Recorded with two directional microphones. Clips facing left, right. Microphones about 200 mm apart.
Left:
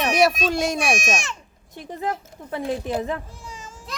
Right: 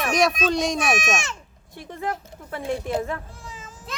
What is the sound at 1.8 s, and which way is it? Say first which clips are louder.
Speech: left 2 dB; 20° left (ahead or behind).